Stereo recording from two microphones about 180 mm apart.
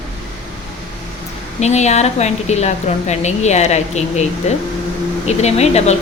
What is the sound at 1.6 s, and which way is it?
A woman's voice, 40° left (ahead or behind).